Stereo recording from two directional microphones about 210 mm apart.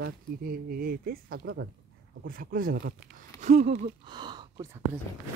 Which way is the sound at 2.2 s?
40° right (ahead or behind).